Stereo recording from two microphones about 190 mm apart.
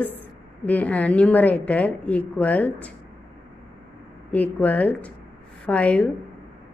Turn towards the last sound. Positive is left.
turn(degrees=5)  # may be behind; listen again after turning